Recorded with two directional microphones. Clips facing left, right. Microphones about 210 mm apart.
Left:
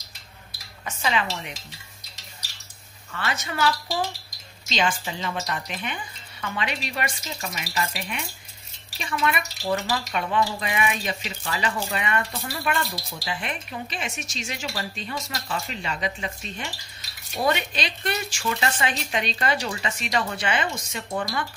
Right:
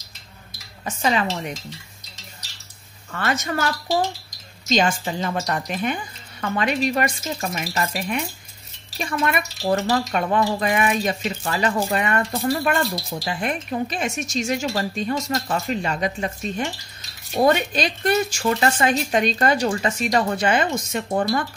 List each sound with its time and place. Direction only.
0.8 s dishes: 40° right (ahead or behind)
3.1 s speech: 45° right (ahead or behind)